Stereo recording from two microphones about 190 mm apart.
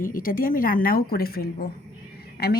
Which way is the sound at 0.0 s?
45° left (ahead or behind).